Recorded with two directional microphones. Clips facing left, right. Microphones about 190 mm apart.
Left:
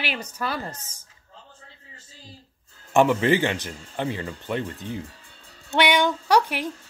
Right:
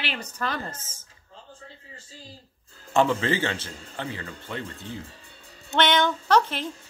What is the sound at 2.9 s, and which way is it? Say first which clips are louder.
A woman's voice: left 4 dB; 15° left (ahead or behind).